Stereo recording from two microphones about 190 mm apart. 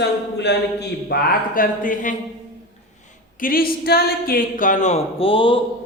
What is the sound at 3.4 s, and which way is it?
Speech, 50° left (ahead or behind).